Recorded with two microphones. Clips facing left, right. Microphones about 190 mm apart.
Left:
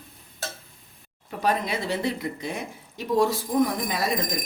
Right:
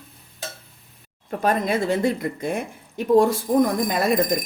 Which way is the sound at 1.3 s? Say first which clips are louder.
Right 4 dB; 50° right (ahead or behind).